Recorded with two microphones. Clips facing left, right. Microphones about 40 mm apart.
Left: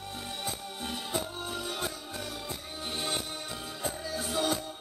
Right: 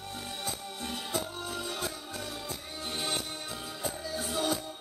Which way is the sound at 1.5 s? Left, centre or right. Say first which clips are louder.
Left 1 dB; centre.